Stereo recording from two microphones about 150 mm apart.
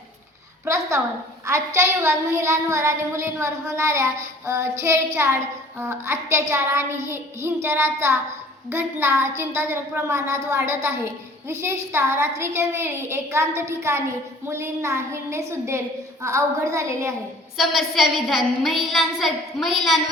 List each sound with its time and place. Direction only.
0.6 s a sound: 20° right (ahead or behind)
1.5 s a woman's voice: 20° right (ahead or behind)
17.6 s a woman's voice: centre (ahead or behind)